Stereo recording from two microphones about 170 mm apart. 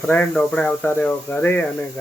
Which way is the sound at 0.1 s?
10° left (ahead or behind).